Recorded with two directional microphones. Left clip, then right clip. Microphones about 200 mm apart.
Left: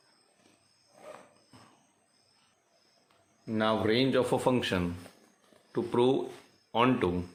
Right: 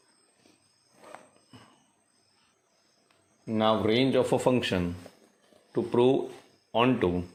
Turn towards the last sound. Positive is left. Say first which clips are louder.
# right 2 dB
turn(degrees=-5)  # may be behind; listen again after turning